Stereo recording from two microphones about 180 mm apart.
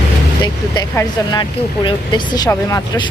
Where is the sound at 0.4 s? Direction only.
20° left (ahead or behind).